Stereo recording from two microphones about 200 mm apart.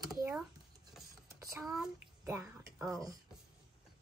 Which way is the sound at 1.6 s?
Centre (ahead or behind).